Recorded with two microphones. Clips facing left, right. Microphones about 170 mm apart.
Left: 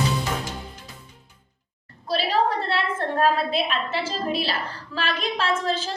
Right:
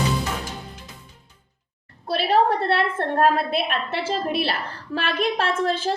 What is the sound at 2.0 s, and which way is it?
A woman's voice, 55° right (ahead or behind).